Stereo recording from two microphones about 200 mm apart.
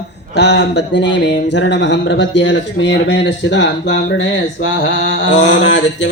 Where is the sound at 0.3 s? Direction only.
60° left (ahead or behind).